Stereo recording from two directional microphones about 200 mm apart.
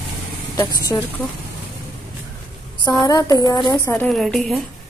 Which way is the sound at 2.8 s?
20° left (ahead or behind).